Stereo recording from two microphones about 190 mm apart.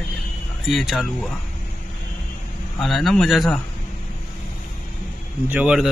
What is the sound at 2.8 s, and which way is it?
Speech, centre (ahead or behind).